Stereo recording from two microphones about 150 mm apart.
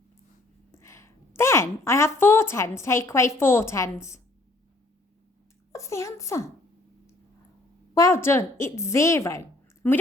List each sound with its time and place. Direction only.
0.7 s a woman's voice: 20° left (ahead or behind)
5.7 s a woman's voice: 20° left (ahead or behind)
7.9 s a woman's voice: 20° left (ahead or behind)